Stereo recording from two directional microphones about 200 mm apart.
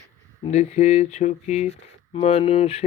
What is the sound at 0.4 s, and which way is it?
Mantra, 35° left (ahead or behind).